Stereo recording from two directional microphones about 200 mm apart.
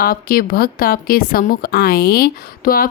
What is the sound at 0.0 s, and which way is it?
Speech, 45° left (ahead or behind).